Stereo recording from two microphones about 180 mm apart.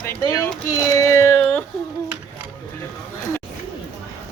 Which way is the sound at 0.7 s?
15° left (ahead or behind).